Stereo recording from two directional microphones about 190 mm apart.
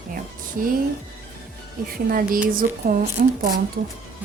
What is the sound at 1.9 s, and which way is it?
A woman's voice, 50° right (ahead or behind).